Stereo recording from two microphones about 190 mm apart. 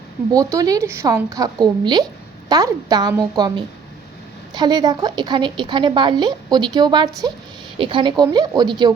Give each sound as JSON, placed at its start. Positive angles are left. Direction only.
{"t": 0.3, "sound": "a woman's voice", "side_deg": -15}
{"t": 4.5, "sound": "a woman's voice", "side_deg": -20}